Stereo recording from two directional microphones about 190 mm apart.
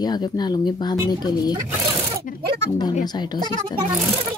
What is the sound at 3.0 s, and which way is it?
Speech, 20° left (ahead or behind).